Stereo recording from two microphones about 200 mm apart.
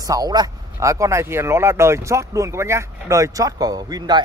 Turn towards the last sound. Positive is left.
turn(degrees=-20)  # may be behind; listen again after turning